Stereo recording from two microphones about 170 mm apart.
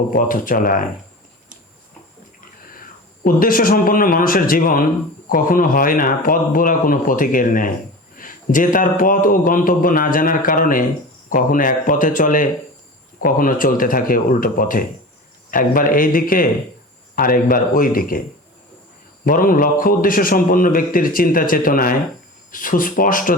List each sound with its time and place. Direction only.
0.1 s a man's voice: 55° left (ahead or behind)
3.2 s a man's voice: 55° left (ahead or behind)
19.2 s a man's voice: 55° left (ahead or behind)